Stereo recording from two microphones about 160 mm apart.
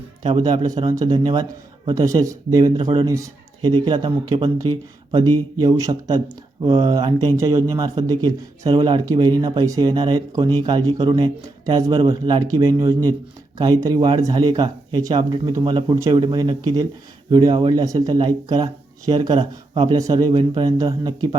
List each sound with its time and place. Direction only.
0.2 s speech: 30° right (ahead or behind)
5.5 s speech: 20° right (ahead or behind)